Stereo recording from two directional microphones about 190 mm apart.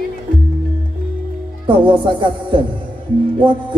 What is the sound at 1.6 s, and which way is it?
A man's voice, 25° right (ahead or behind).